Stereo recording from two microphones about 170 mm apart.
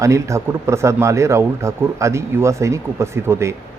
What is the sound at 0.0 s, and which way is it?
Speech, 15° right (ahead or behind).